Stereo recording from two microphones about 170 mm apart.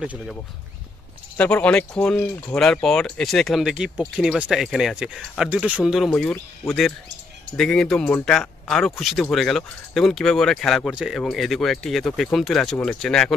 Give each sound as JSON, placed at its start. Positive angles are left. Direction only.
{"t": 0.0, "sound": "speech", "side_deg": -5}
{"t": 1.3, "sound": "speech", "side_deg": 10}
{"t": 6.3, "sound": "speech", "side_deg": 15}
{"t": 7.5, "sound": "speech", "side_deg": 5}